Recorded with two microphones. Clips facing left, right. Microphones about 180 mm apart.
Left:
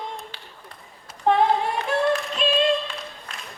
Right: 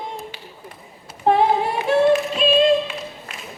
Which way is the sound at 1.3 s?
5° right (ahead or behind).